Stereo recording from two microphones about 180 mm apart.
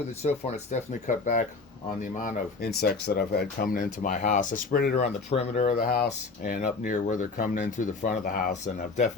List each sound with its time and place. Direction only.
0.2 s speech: 35° left (ahead or behind)
2.6 s speech: 60° left (ahead or behind)
4.9 s speech: 35° left (ahead or behind)
5.7 s speech: 55° left (ahead or behind)